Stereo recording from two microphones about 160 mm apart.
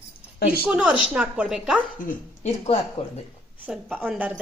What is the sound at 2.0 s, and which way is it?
Speech, 45° left (ahead or behind).